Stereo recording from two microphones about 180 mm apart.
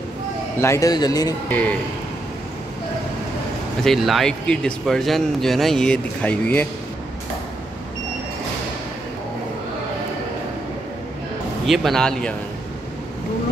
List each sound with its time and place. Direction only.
0.6 s speech: 15° left (ahead or behind)
1.5 s speech: 10° left (ahead or behind)
3.8 s speech: centre (ahead or behind)
11.6 s speech: centre (ahead or behind)